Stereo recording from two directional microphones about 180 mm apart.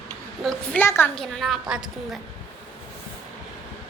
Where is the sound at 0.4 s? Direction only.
10° left (ahead or behind).